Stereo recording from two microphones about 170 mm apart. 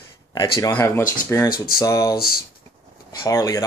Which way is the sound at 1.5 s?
60° left (ahead or behind).